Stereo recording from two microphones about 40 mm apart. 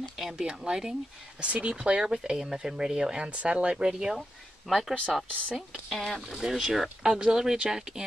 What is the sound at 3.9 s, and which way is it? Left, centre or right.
Speech, centre.